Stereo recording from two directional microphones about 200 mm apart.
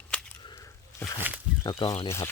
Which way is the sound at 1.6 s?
20° left (ahead or behind).